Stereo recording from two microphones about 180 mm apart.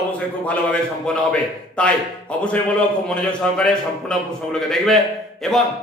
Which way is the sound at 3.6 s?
5° left (ahead or behind).